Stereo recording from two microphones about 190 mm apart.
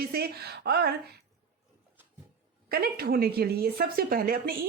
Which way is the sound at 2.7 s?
50° right (ahead or behind).